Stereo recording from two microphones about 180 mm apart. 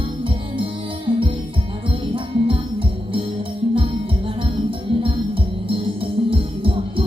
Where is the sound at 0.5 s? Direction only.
30° right (ahead or behind).